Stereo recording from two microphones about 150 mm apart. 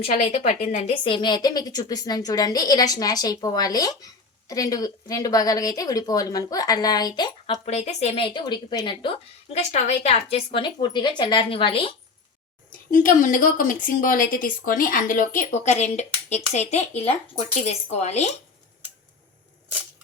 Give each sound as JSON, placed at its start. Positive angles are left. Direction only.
{"t": 0.0, "sound": "a woman's voice", "side_deg": 45}
{"t": 7.5, "sound": "speech", "side_deg": 50}
{"t": 12.9, "sound": "a woman's voice", "side_deg": 60}